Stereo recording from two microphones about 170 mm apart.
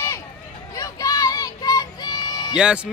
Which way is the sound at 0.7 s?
20° left (ahead or behind).